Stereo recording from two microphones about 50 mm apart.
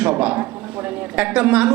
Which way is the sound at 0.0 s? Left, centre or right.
Centre.